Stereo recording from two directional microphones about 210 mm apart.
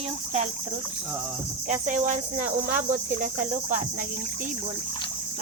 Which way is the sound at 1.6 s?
35° right (ahead or behind).